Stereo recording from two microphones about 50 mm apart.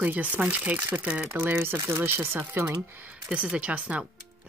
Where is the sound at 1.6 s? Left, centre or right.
Right.